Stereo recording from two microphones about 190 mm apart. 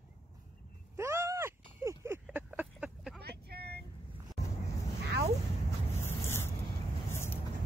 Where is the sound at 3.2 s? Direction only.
55° right (ahead or behind).